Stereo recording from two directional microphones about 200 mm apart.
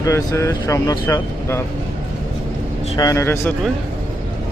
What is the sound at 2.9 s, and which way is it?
Speech, 15° left (ahead or behind).